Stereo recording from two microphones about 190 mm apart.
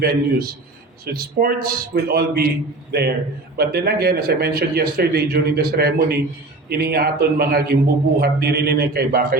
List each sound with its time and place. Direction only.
0.0 s a man's voice: 50° right (ahead or behind)